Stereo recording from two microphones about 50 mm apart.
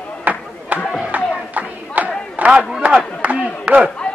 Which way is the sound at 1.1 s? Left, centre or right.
Right.